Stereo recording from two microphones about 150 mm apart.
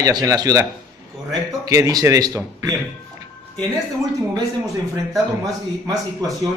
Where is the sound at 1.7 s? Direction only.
20° right (ahead or behind).